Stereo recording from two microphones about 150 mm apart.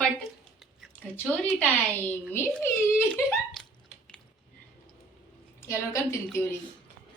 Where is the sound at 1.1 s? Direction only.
10° left (ahead or behind).